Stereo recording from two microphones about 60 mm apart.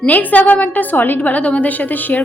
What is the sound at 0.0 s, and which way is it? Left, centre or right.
A woman's voice, left.